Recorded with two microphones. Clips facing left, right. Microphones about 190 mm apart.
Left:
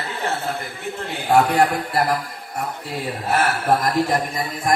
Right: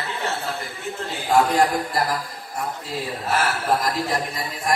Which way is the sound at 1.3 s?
60° left (ahead or behind).